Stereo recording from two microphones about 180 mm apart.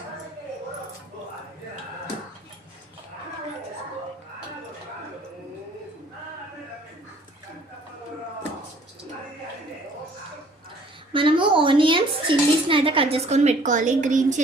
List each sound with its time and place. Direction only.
11.1 s a woman's voice: 30° right (ahead or behind)